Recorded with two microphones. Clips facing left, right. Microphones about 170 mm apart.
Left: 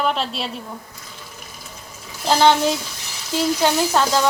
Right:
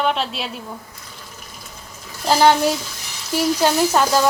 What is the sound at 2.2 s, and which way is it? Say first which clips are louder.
Speech: right 1 dB; 5° right (ahead or behind).